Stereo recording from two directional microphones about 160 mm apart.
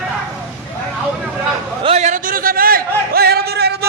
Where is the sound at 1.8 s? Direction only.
45° right (ahead or behind); by 3.9 s 85° right.